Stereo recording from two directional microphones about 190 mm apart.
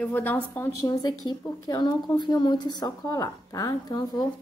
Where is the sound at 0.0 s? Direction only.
10° left (ahead or behind).